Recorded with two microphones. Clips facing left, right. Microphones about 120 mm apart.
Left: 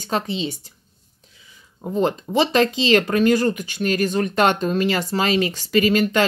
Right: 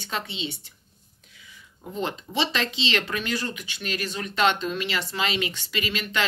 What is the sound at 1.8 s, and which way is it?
Speech, 45° left (ahead or behind).